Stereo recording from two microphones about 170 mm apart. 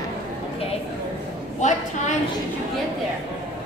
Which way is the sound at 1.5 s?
45° left (ahead or behind).